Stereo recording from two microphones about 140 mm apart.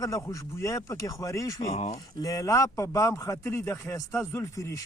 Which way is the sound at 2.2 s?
25° left (ahead or behind).